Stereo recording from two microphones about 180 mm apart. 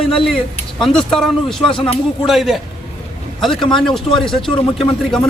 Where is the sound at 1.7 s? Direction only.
30° left (ahead or behind).